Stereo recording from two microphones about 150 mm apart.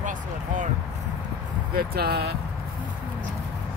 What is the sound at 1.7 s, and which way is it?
Speech, 90° right.